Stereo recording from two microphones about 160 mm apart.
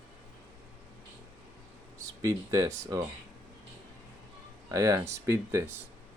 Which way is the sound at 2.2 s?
20° right (ahead or behind).